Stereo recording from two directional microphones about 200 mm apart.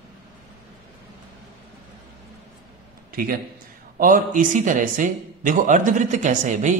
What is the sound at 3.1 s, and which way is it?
A man's voice, 45° right (ahead or behind).